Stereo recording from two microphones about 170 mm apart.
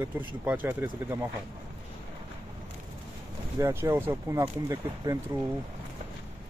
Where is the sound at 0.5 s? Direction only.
10° right (ahead or behind).